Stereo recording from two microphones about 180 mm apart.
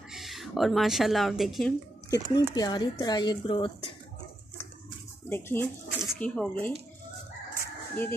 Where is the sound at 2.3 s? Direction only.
20° left (ahead or behind).